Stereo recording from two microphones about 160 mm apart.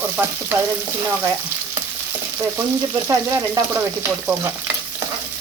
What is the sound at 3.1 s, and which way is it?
Frying, 20° right (ahead or behind).